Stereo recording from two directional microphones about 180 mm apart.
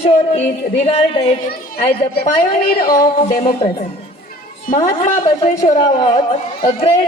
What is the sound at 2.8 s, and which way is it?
Speech, 20° left (ahead or behind).